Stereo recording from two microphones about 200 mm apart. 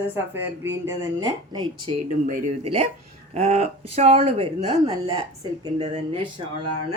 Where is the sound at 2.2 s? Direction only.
35° right (ahead or behind).